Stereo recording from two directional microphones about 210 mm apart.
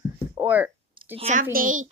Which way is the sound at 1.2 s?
30° right (ahead or behind).